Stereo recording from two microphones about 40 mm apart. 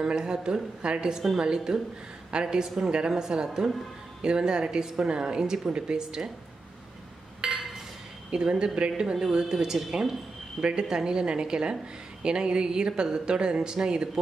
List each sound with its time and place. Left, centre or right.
0.0 s speech: centre
7.4 s chink: centre
8.3 s speech: right
9.0 s speech: centre